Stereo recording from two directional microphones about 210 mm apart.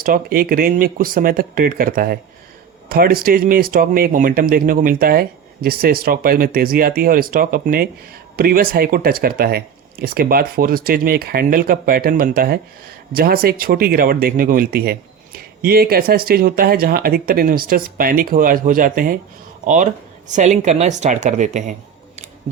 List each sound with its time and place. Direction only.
0.0 s speech: 40° right (ahead or behind)